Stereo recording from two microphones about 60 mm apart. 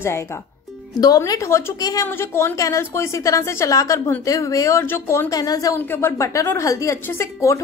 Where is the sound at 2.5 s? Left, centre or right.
Left.